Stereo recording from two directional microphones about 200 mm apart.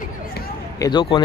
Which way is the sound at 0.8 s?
25° left (ahead or behind).